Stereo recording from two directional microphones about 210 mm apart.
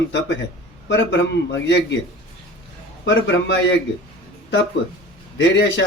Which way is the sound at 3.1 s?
60° left (ahead or behind).